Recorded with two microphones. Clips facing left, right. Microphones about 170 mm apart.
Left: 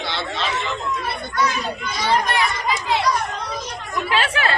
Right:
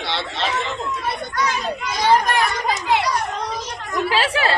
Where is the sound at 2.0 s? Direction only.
45° right (ahead or behind).